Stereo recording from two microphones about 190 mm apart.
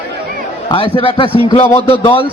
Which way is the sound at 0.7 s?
25° left (ahead or behind).